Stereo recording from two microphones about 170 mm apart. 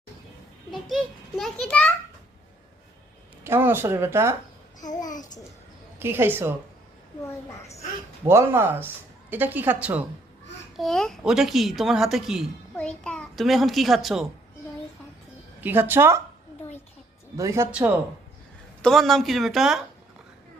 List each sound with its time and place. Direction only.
0.7 s a woman's voice: centre (ahead or behind)
3.4 s speech: 15° right (ahead or behind)
5.0 s a child's voice: 50° left (ahead or behind)
6.0 s speech: 15° right (ahead or behind)
7.6 s a child's voice: 40° left (ahead or behind)
8.2 s speech: 15° right (ahead or behind)
10.8 s a woman's voice: 5° left (ahead or behind)
15.6 s speech: 10° right (ahead or behind)
17.3 s a woman's voice: 20° right (ahead or behind); by 19.8 s centre (ahead or behind)